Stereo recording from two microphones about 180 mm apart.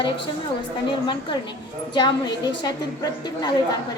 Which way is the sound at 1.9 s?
25° left (ahead or behind).